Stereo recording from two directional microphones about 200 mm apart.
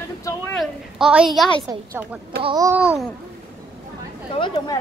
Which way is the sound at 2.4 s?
15° right (ahead or behind).